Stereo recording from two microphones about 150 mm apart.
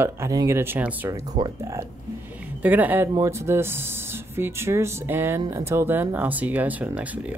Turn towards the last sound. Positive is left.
turn(degrees=-10)  # may be behind; listen again after turning